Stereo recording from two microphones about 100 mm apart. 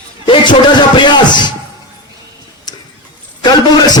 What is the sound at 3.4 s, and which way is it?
Speech, 40° left (ahead or behind).